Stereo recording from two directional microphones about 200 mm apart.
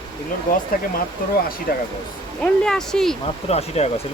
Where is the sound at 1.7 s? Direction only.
45° left (ahead or behind).